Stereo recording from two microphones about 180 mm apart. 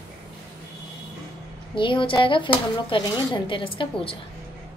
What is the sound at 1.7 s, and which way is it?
A woman's voice, 30° left (ahead or behind).